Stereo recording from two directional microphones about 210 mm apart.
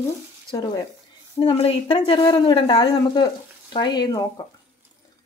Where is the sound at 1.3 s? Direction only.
25° left (ahead or behind).